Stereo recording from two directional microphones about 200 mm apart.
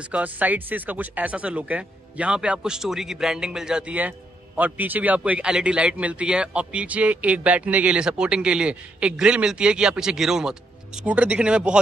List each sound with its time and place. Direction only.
0.1 s a man's voice: 10° right (ahead or behind)